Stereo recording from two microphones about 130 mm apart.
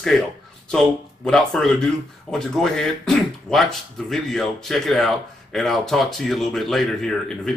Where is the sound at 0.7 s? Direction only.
5° left (ahead or behind).